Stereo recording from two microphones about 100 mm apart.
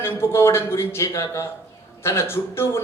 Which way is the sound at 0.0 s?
25° left (ahead or behind).